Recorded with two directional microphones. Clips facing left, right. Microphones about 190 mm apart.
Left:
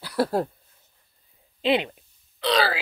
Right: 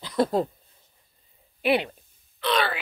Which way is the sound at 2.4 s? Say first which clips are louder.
Left 2 dB; 30° left (ahead or behind).